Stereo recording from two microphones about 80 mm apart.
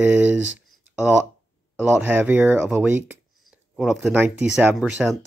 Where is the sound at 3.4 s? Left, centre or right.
Centre.